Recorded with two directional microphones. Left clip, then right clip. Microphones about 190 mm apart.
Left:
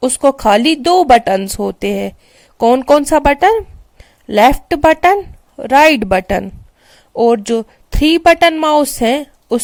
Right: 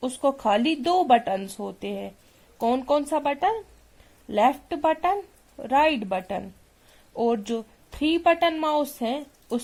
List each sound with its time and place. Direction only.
0.0 s speech: 35° left (ahead or behind)